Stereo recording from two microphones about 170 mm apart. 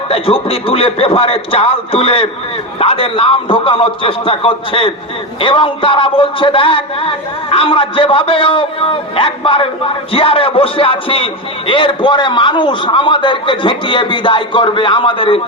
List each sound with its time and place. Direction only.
0.1 s speech: 35° left (ahead or behind)